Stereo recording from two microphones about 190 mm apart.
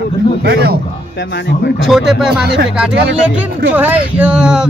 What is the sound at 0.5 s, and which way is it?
Speech, 60° right (ahead or behind).